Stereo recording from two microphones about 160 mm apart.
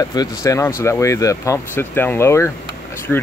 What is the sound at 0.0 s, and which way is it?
Speech, 25° left (ahead or behind).